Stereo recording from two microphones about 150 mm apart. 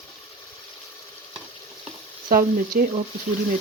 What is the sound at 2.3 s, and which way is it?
Frying, 75° right (ahead or behind).